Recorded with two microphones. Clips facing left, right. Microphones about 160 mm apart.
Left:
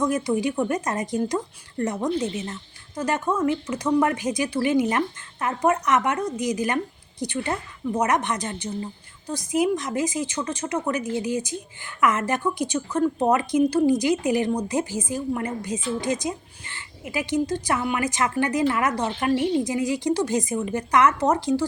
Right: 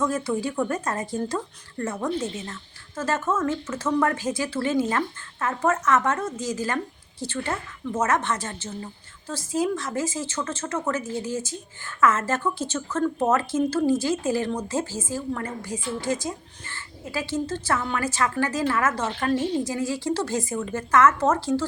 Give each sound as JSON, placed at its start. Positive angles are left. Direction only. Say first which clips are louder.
{"t": 0.0, "sound": "speech", "louder": "left 2 dB", "side_deg": 15}